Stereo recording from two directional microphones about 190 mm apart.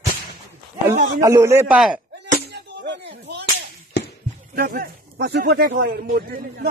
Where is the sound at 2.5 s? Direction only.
65° right (ahead or behind).